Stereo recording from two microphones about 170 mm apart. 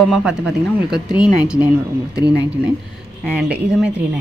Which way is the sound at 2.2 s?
75° right (ahead or behind).